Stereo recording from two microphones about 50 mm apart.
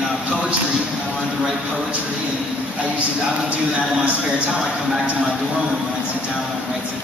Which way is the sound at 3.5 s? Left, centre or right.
Right.